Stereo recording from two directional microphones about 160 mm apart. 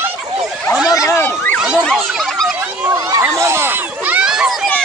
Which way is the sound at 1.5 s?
Centre (ahead or behind).